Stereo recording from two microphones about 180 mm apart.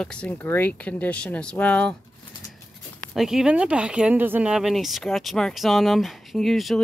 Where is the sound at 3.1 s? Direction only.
Centre (ahead or behind).